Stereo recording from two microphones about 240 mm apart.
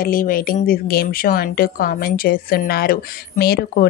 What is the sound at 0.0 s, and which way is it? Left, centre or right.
Speech, left.